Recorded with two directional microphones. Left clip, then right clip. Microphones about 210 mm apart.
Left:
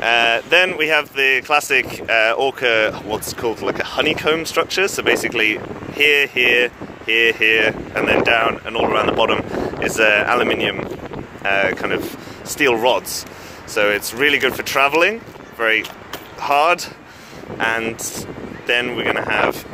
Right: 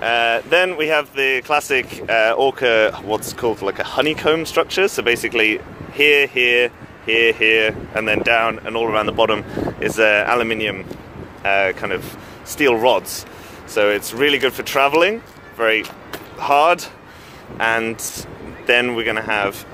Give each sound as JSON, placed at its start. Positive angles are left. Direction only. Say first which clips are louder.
{"t": 0.0, "sound": "speech", "louder": "left 2 dB", "side_deg": 5}